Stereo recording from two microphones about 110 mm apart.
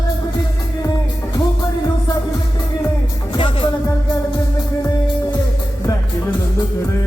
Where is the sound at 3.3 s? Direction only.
50° left (ahead or behind).